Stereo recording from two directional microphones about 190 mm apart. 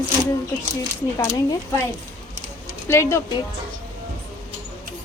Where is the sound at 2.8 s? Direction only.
15° left (ahead or behind).